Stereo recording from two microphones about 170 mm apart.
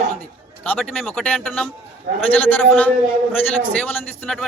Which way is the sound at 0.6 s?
5° left (ahead or behind).